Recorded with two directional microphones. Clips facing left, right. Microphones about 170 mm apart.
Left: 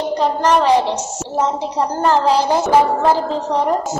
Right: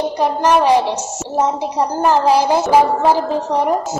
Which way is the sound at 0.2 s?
10° right (ahead or behind).